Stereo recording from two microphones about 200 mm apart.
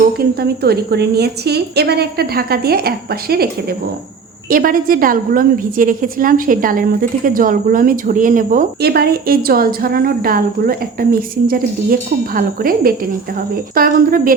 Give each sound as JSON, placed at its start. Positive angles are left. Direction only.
{"t": 0.2, "sound": "a woman's voice", "side_deg": -50}